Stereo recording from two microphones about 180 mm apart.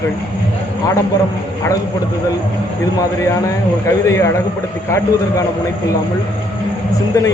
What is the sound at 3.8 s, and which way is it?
Speech, 15° left (ahead or behind).